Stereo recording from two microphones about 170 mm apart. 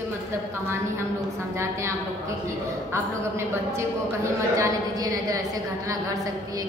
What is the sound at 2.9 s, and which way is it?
A woman's voice, 15° right (ahead or behind).